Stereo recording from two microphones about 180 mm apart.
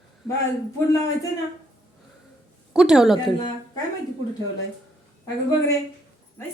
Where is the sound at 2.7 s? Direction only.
5° right (ahead or behind).